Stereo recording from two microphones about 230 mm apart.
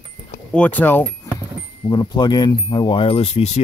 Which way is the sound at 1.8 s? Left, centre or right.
Centre.